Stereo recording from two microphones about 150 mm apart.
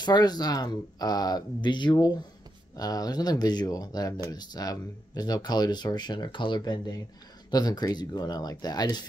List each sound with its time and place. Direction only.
0.0 s speech: 25° left (ahead or behind)